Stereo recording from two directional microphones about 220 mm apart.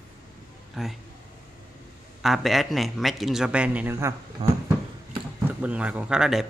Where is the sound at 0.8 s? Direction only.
Centre (ahead or behind).